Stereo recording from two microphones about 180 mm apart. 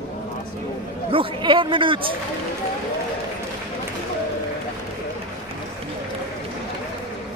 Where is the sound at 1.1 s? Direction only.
30° right (ahead or behind).